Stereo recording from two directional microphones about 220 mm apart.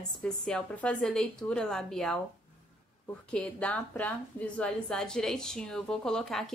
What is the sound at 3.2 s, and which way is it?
A woman's voice, 5° left (ahead or behind).